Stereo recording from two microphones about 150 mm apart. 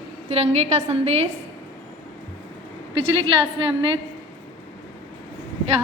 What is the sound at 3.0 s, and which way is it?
A woman's voice, 35° right (ahead or behind).